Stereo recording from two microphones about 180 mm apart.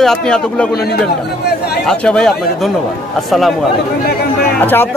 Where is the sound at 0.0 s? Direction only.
5° left (ahead or behind).